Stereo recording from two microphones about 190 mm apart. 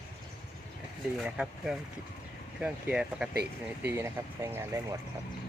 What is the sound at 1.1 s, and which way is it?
Speech, centre (ahead or behind).